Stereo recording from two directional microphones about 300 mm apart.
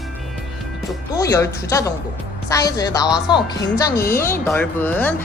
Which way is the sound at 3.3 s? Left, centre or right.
Centre.